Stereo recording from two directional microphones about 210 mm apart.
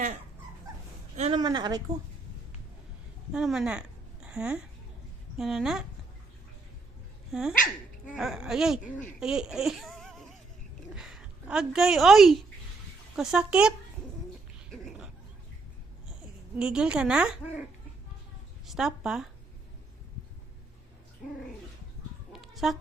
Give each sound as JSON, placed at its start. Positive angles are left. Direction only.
{"t": 1.1, "sound": "a sound", "side_deg": -30}
{"t": 1.4, "sound": "a woman's voice", "side_deg": -20}
{"t": 3.3, "sound": "a woman's voice", "side_deg": 0}
{"t": 7.3, "sound": "speech", "side_deg": -5}
{"t": 7.5, "sound": "speech", "side_deg": 40}
{"t": 8.1, "sound": "a woman's voice", "side_deg": 0}
{"t": 14.7, "sound": "a sound", "side_deg": -5}
{"t": 16.6, "sound": "speech", "side_deg": -5}
{"t": 22.3, "sound": "chicken", "side_deg": 0}